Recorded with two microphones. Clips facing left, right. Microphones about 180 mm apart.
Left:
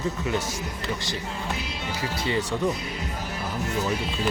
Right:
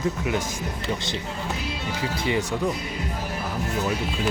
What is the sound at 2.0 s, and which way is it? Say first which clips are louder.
Speech: right 2 dB; 15° right (ahead or behind).